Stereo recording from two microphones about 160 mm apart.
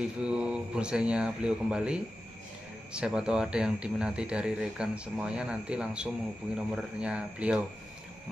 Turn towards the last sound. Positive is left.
turn(degrees=-10)  # may be behind; listen again after turning